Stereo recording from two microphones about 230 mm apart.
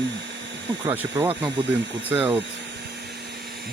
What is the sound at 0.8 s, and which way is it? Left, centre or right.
Speech, centre.